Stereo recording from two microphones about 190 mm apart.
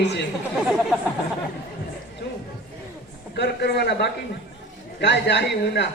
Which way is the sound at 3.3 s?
60° left (ahead or behind).